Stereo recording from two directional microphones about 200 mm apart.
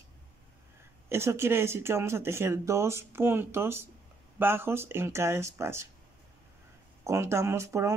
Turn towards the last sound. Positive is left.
turn(degrees=-15)  # may be behind; listen again after turning